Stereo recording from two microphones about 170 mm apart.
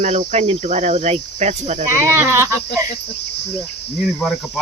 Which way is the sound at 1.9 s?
15° right (ahead or behind).